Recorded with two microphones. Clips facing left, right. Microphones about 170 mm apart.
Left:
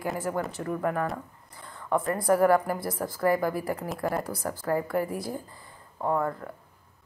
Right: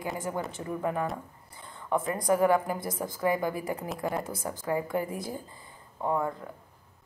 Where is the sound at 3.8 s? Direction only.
Centre (ahead or behind).